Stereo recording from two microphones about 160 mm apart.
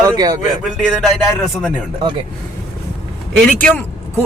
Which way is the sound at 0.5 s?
Centre (ahead or behind).